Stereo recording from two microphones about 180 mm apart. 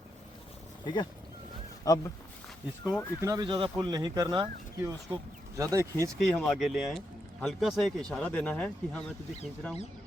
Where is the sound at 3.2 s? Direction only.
20° right (ahead or behind).